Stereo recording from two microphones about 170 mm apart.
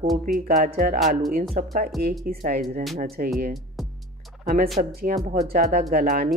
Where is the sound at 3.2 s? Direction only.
55° right (ahead or behind).